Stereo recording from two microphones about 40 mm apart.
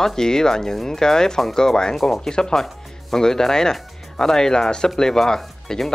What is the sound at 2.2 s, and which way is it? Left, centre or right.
Speech, centre.